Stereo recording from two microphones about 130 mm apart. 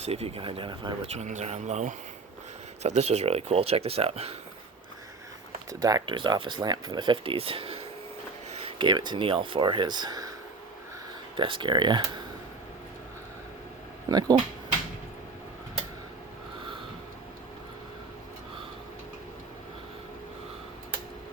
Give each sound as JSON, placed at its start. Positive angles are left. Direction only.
{"t": 0.0, "sound": "speech", "side_deg": -50}
{"t": 1.0, "sound": "speech", "side_deg": -60}
{"t": 5.8, "sound": "speech", "side_deg": -35}
{"t": 8.6, "sound": "speech", "side_deg": -35}
{"t": 11.3, "sound": "speech", "side_deg": -40}
{"t": 14.1, "sound": "speech", "side_deg": -30}